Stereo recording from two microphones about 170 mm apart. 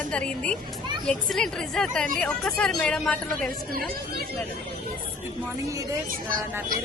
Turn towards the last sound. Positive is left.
turn(degrees=-55)  # may be behind; listen again after turning